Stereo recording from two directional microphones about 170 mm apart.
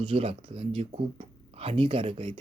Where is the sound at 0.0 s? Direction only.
35° right (ahead or behind).